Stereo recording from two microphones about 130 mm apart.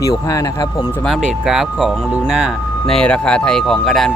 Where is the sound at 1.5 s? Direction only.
5° right (ahead or behind).